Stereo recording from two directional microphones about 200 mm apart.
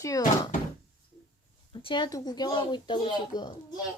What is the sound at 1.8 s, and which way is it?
Speech, 25° left (ahead or behind).